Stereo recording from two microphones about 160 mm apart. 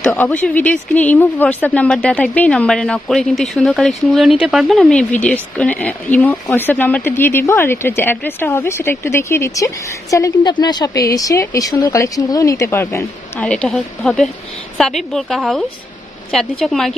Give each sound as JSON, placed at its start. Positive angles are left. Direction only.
{"t": 0.0, "sound": "a woman's voice", "side_deg": 10}